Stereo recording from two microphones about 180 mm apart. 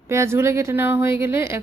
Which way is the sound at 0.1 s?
15° right (ahead or behind).